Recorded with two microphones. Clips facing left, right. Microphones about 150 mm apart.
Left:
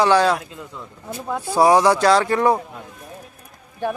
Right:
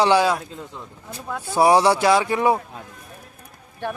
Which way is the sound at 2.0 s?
10° right (ahead or behind).